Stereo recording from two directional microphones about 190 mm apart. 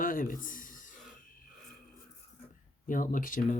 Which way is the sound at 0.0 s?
45° left (ahead or behind).